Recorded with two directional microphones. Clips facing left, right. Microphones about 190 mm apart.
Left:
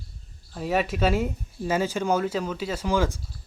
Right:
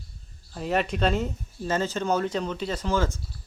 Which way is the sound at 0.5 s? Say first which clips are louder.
Left 1 dB; centre (ahead or behind).